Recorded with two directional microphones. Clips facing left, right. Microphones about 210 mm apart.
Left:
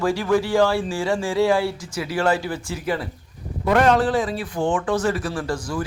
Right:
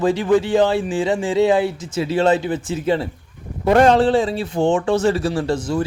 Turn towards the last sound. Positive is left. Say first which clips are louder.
# right 6 dB
turn(degrees=-25)  # may be behind; listen again after turning